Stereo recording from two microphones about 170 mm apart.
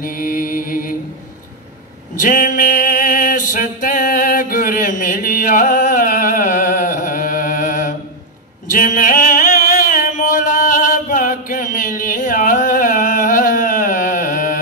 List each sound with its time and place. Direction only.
0.0 s mantra: 55° left (ahead or behind)
2.2 s music: 55° left (ahead or behind)
8.6 s a sound: 50° left (ahead or behind)